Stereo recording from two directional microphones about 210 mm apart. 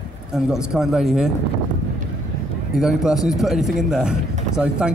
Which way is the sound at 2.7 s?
Centre (ahead or behind).